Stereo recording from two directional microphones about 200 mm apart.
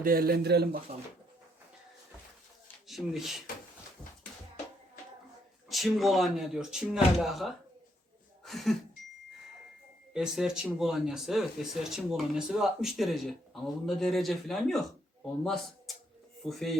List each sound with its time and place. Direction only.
0.0 s a man's voice: 45° right (ahead or behind)
2.8 s speech: centre (ahead or behind)
5.6 s speech: centre (ahead or behind)
8.4 s a sound: centre (ahead or behind)
10.1 s speech: 5° right (ahead or behind)
16.4 s speech: centre (ahead or behind)